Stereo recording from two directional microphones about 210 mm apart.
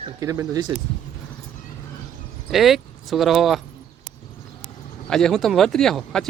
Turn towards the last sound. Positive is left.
turn(degrees=0)  # may be behind; listen again after turning